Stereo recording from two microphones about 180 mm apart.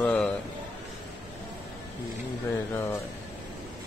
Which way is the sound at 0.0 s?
5° left (ahead or behind).